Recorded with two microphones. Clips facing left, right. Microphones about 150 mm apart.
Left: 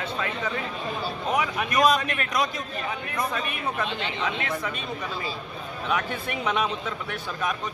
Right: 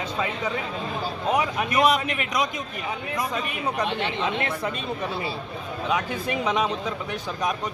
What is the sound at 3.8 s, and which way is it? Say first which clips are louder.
Speech: right 4 dB; 60° right (ahead or behind).